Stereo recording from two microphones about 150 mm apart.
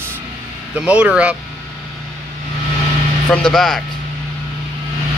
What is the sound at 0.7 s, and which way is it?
Speech, 10° right (ahead or behind).